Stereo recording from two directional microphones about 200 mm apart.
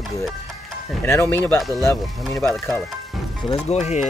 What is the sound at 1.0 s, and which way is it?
Speech, 10° left (ahead or behind).